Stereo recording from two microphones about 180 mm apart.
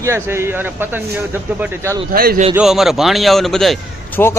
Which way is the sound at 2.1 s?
50° right (ahead or behind).